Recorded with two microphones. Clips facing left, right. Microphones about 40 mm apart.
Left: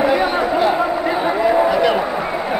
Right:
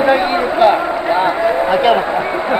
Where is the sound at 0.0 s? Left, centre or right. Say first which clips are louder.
Right 3 dB; right.